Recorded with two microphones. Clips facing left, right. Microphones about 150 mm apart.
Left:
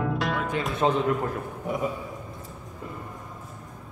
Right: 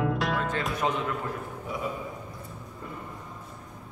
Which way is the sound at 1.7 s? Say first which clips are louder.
Left 6 dB; 55° left (ahead or behind).